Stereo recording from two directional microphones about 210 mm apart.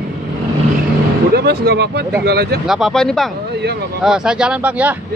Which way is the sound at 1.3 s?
50° right (ahead or behind).